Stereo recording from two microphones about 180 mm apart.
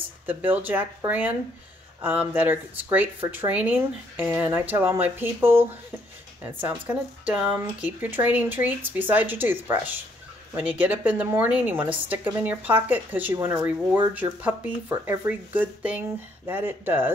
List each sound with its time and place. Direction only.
0.3 s speech: 10° right (ahead or behind)